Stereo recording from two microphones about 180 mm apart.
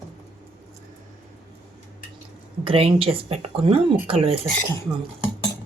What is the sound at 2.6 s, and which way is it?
Speech, 30° right (ahead or behind).